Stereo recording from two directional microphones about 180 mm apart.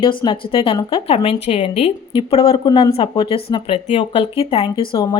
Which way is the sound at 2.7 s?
20° left (ahead or behind).